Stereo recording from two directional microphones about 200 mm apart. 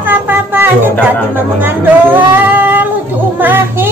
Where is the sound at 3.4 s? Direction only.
10° right (ahead or behind).